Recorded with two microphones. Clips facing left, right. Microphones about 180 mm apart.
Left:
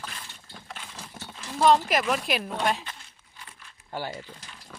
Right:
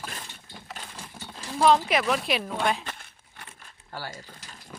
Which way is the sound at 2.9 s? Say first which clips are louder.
Right 2 dB; 60° right (ahead or behind).